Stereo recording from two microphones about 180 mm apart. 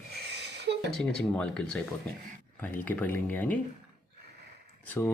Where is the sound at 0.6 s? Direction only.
70° right (ahead or behind).